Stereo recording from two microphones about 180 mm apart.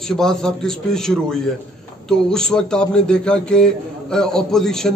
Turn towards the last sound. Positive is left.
turn(degrees=5)  # may be behind; listen again after turning